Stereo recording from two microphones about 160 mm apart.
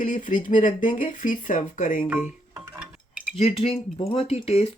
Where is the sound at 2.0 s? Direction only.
10° right (ahead or behind).